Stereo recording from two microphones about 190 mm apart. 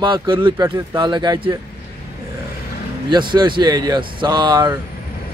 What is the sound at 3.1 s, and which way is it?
Speech, 25° right (ahead or behind).